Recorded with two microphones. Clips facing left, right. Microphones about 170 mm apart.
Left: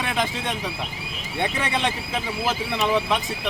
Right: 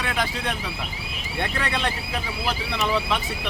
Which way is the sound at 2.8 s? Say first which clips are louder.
Left 2 dB; 20° left (ahead or behind).